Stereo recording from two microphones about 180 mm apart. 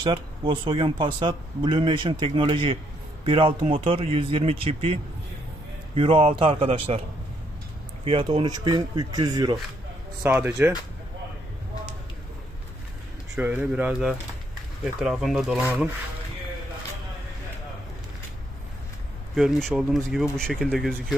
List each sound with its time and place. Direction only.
0.0 s speech: 30° right (ahead or behind)
5.9 s speech: 30° right (ahead or behind)
8.0 s speech: 30° right (ahead or behind)
10.2 s speech: 10° right (ahead or behind)
13.4 s speech: 10° right (ahead or behind)
19.3 s speech: centre (ahead or behind)